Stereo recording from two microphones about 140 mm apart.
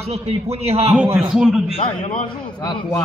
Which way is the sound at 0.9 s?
5° right (ahead or behind).